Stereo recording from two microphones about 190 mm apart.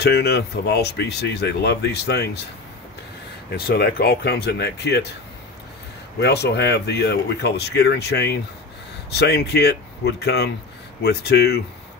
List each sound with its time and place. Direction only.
0.0 s speech: 60° left (ahead or behind)
3.5 s speech: 55° left (ahead or behind)
6.1 s speech: 60° left (ahead or behind)